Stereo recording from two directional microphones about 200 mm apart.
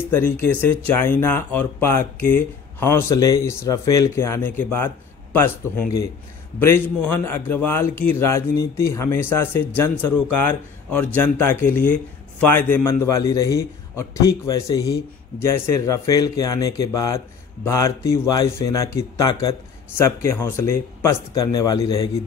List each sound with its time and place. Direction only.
0.1 s speech: 10° left (ahead or behind)